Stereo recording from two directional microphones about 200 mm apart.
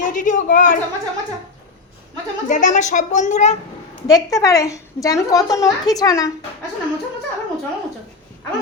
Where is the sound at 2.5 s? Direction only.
40° left (ahead or behind).